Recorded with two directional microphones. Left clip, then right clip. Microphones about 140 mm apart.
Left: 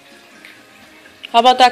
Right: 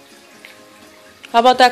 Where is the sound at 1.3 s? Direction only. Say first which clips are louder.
Left 1 dB; 20° right (ahead or behind).